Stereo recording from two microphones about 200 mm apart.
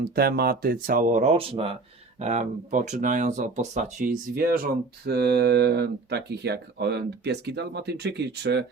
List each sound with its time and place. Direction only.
0.0 s speech: 50° right (ahead or behind)